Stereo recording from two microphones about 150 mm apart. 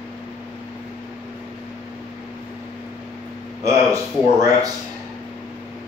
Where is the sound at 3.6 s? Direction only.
20° right (ahead or behind).